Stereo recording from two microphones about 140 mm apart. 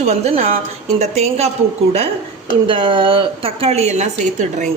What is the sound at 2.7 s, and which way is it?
A woman's voice, 40° right (ahead or behind).